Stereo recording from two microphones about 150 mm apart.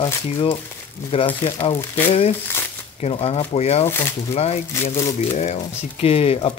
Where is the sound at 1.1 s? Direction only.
35° left (ahead or behind).